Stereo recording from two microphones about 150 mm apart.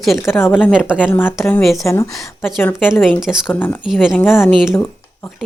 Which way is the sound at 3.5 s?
15° left (ahead or behind).